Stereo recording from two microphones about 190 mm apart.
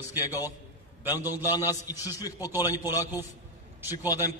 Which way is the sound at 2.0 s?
20° left (ahead or behind).